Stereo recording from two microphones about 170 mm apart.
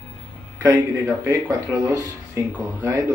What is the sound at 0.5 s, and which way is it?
Speech, 15° right (ahead or behind).